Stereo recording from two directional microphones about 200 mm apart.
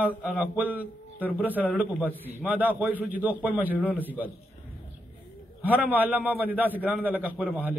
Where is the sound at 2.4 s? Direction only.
10° right (ahead or behind).